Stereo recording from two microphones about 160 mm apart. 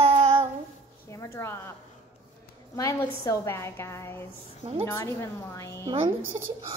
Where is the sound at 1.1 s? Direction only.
20° left (ahead or behind).